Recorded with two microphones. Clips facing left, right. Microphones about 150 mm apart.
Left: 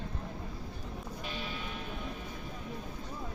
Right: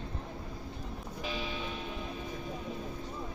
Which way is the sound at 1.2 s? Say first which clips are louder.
Right 5 dB; 90° right.